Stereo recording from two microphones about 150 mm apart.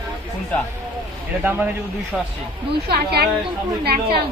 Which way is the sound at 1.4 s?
10° right (ahead or behind).